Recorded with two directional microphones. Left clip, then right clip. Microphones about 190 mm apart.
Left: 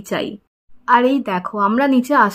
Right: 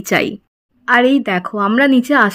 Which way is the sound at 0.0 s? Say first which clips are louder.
Right 7 dB; 20° right (ahead or behind).